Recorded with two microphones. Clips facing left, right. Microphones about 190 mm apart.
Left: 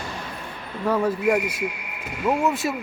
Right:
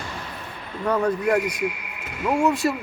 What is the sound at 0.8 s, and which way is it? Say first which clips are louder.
Speech: even; 5° left (ahead or behind).